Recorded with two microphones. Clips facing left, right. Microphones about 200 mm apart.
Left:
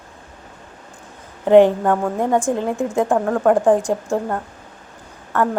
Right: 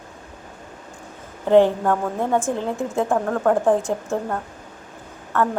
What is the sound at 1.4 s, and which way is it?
A woman's voice, 15° left (ahead or behind).